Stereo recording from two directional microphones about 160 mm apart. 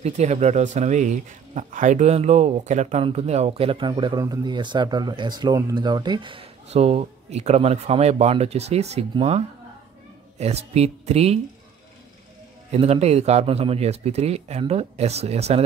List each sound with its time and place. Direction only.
0.0 s speech: 45° right (ahead or behind)
10.3 s speech: 40° right (ahead or behind)
12.7 s speech: 40° right (ahead or behind)